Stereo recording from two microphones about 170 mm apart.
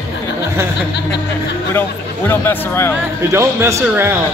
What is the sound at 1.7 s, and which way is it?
Speech, 15° left (ahead or behind).